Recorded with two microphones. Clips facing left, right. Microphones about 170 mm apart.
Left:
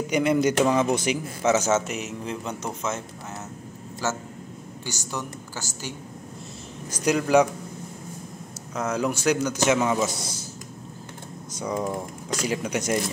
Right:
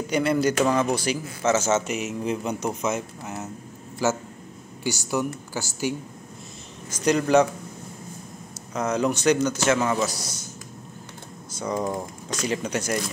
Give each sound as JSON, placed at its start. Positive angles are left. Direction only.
{"t": 0.0, "sound": "speech", "side_deg": 15}
{"t": 1.9, "sound": "speech", "side_deg": -5}
{"t": 2.2, "sound": "speech", "side_deg": -15}
{"t": 6.9, "sound": "speech", "side_deg": 10}
{"t": 8.7, "sound": "speech", "side_deg": 5}
{"t": 10.0, "sound": "a man's voice", "side_deg": 25}
{"t": 12.3, "sound": "speech", "side_deg": 10}